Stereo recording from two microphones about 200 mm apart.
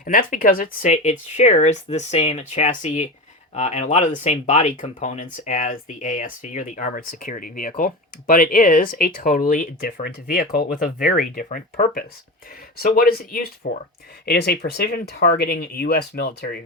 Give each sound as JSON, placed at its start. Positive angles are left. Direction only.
{"t": 0.0, "sound": "speech", "side_deg": 45}